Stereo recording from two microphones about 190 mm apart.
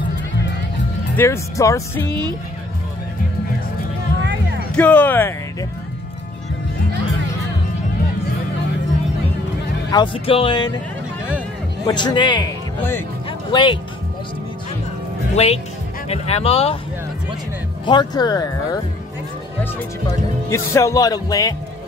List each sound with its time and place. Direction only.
1.1 s speech: 15° left (ahead or behind)
4.2 s music: 70° right (ahead or behind)
4.7 s speech: 10° left (ahead or behind)
9.8 s speech: 25° left (ahead or behind)
11.8 s speech: 25° left (ahead or behind)
13.5 s speech: 25° left (ahead or behind)
15.3 s speech: 35° left (ahead or behind)
17.8 s speech: 25° left (ahead or behind)
20.5 s speech: 15° left (ahead or behind)